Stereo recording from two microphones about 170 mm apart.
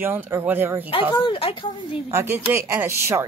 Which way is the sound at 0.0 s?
10° right (ahead or behind).